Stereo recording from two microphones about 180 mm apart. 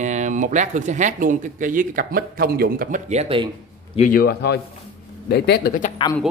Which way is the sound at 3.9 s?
50° left (ahead or behind).